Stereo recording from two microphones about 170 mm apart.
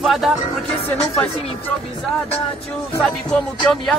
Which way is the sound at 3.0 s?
5° left (ahead or behind).